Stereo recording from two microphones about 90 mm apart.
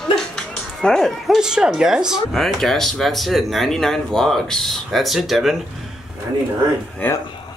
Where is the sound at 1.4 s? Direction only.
10° right (ahead or behind).